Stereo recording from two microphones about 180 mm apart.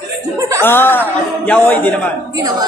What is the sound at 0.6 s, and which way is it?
A woman's voice, 10° left (ahead or behind).